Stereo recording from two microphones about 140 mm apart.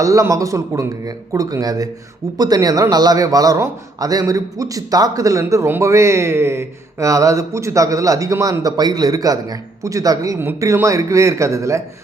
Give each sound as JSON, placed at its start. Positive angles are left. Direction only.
{"t": 0.0, "sound": "a man's voice", "side_deg": -25}